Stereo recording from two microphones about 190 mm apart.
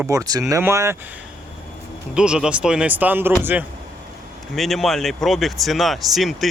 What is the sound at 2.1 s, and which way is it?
Speech, 5° right (ahead or behind).